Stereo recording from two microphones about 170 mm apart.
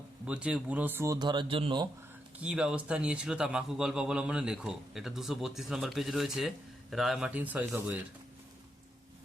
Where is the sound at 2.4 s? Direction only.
5° right (ahead or behind).